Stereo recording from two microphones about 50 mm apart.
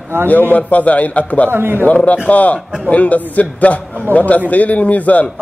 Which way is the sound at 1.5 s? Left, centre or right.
Right.